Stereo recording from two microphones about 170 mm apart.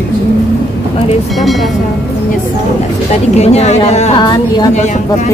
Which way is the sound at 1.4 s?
Centre (ahead or behind).